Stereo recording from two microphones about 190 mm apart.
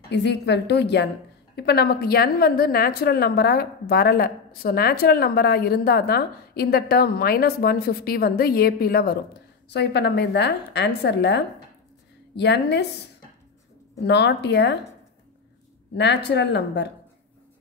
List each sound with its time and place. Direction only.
0.1 s a woman's voice: 65° left (ahead or behind)
14.0 s a woman's voice: 60° left (ahead or behind)
16.0 s a woman's voice: 65° left (ahead or behind)